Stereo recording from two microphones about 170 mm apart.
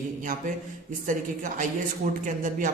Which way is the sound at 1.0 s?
50° right (ahead or behind).